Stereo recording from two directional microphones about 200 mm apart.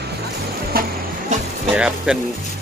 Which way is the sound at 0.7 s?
50° right (ahead or behind).